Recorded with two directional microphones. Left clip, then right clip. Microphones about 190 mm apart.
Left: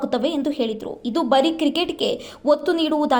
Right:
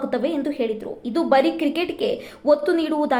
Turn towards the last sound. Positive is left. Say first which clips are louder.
# left 1 dB
turn(degrees=25)  # may be behind; listen again after turning